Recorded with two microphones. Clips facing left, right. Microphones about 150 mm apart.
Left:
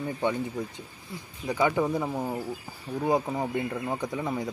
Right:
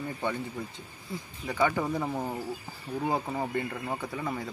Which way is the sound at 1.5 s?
10° left (ahead or behind).